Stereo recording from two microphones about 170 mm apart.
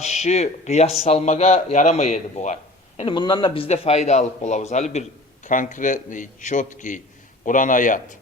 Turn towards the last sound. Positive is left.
turn(degrees=50)  # may be behind; listen again after turning